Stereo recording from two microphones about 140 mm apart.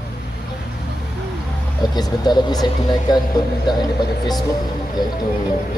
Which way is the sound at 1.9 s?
30° left (ahead or behind).